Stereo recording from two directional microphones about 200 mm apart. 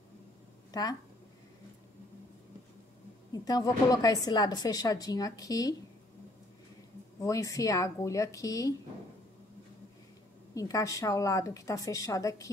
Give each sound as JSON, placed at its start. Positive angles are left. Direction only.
{"t": 0.7, "sound": "speech", "side_deg": 20}
{"t": 3.4, "sound": "a woman's voice", "side_deg": 20}
{"t": 7.2, "sound": "a woman's voice", "side_deg": 15}
{"t": 10.5, "sound": "a woman's voice", "side_deg": 15}